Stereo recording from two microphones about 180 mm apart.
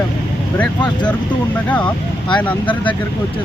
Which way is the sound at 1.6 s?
10° left (ahead or behind).